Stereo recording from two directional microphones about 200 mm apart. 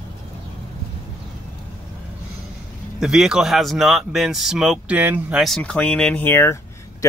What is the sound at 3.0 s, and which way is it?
Speech, 5° right (ahead or behind).